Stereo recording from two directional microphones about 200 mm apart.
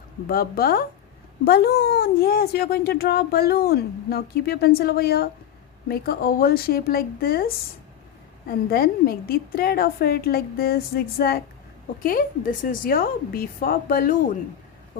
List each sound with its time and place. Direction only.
0.3 s speech: 50° left (ahead or behind)